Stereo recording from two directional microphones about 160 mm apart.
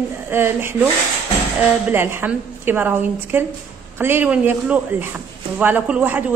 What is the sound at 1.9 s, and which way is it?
Speech, 15° right (ahead or behind).